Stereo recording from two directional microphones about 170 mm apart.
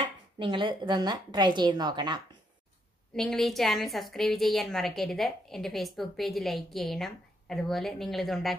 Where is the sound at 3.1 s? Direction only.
Centre (ahead or behind).